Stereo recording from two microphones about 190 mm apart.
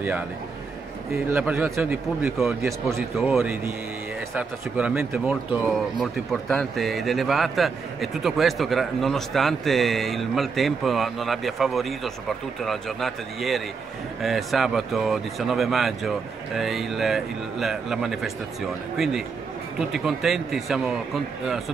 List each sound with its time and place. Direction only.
1.3 s a man's voice: 10° right (ahead or behind)
19.8 s speech: centre (ahead or behind)